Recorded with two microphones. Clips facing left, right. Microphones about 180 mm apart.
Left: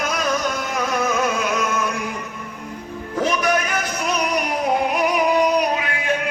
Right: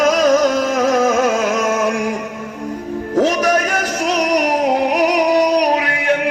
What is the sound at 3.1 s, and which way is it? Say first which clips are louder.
Music: right 6 dB; 40° right (ahead or behind).